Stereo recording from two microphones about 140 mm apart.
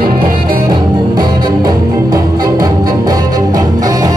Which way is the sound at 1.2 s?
25° right (ahead or behind).